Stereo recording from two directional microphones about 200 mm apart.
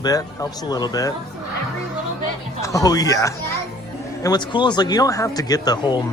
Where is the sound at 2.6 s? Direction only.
15° left (ahead or behind).